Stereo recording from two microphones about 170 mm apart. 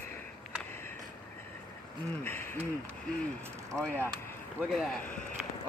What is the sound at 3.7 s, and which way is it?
Speech, 5° left (ahead or behind).